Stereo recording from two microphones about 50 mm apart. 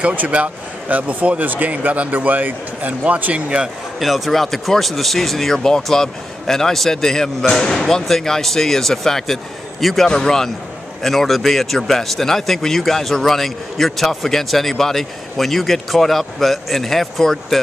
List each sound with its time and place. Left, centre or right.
0.0 s speech: right
3.4 s speech: centre
4.0 s a man's voice: centre